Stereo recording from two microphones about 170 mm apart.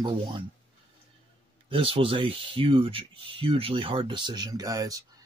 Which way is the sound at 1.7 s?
30° right (ahead or behind).